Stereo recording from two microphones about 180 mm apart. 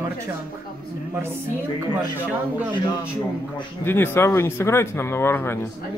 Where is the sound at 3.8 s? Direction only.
10° left (ahead or behind).